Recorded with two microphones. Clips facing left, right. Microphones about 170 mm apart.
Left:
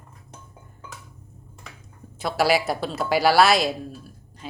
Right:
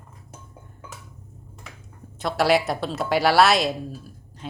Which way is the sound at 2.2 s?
Centre (ahead or behind).